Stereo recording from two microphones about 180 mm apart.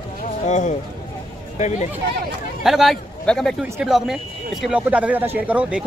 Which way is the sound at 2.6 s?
Centre (ahead or behind).